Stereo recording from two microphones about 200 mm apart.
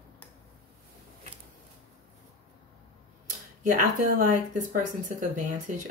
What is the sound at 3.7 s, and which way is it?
Speech, 40° right (ahead or behind).